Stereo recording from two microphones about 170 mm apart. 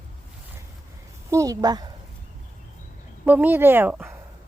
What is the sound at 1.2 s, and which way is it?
Speech, 20° right (ahead or behind).